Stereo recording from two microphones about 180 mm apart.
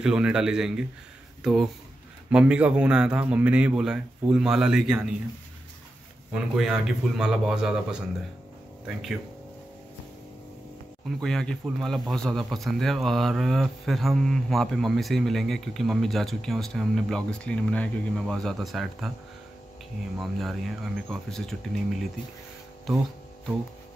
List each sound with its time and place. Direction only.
0.0 s speech: 5° right (ahead or behind)
6.3 s speech: 5° right (ahead or behind)
11.1 s speech: 5° left (ahead or behind)
20.2 s speech: centre (ahead or behind)